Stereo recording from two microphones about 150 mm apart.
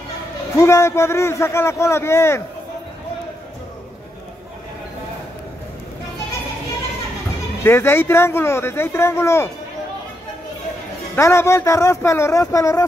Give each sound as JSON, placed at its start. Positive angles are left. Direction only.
{"t": 0.6, "sound": "speech", "side_deg": 20}
{"t": 7.6, "sound": "speech", "side_deg": 15}
{"t": 11.1, "sound": "speech", "side_deg": 20}